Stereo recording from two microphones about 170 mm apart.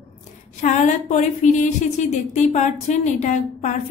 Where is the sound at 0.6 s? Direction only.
45° left (ahead or behind).